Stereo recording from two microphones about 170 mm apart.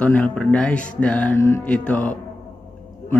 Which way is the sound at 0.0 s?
10° left (ahead or behind).